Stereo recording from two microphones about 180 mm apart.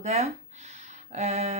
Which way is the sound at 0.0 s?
40° right (ahead or behind).